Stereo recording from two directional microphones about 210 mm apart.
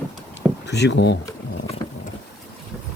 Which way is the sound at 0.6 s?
55° left (ahead or behind).